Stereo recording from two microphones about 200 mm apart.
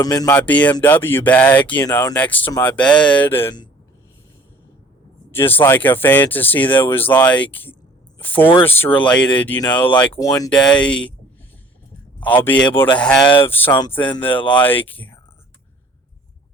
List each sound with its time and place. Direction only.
0.0 s speech: 15° left (ahead or behind)
5.3 s speech: 10° left (ahead or behind)
10.5 s speech: 5° left (ahead or behind)
12.2 s speech: 10° left (ahead or behind)